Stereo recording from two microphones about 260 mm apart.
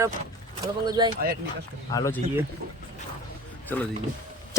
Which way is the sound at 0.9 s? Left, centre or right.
Centre.